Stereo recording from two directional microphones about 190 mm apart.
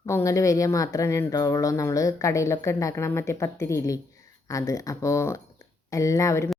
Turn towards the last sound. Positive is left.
turn(degrees=15)  # may be behind; listen again after turning